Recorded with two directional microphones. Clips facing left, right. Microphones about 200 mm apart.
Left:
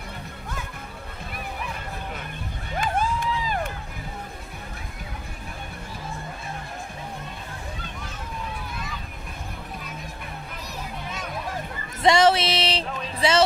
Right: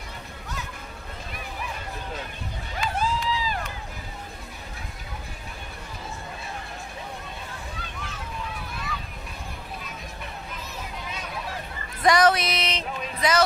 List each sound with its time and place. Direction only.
2.7 s crowd: 50° left (ahead or behind)
12.0 s speech: 25° left (ahead or behind)